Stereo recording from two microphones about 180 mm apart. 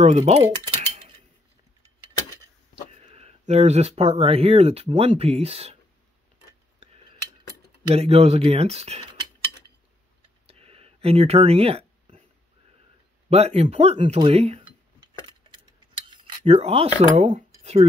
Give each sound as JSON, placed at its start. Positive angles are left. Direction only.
{"t": 0.0, "sound": "dishes", "side_deg": -35}
{"t": 2.9, "sound": "speech", "side_deg": -35}
{"t": 7.9, "sound": "speech", "side_deg": -35}
{"t": 10.4, "sound": "a sound", "side_deg": -35}
{"t": 13.3, "sound": "speech", "side_deg": -35}
{"t": 16.4, "sound": "speech", "side_deg": -35}